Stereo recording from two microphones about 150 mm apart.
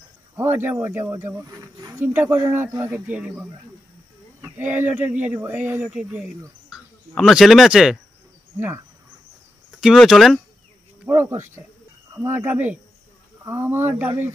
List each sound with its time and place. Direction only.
0.4 s speech: 15° right (ahead or behind)
8.5 s speech: 15° right (ahead or behind)
9.8 s speech: centre (ahead or behind)
11.1 s speech: 15° right (ahead or behind)